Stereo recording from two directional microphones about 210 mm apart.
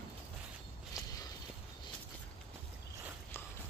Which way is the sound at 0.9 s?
15° left (ahead or behind).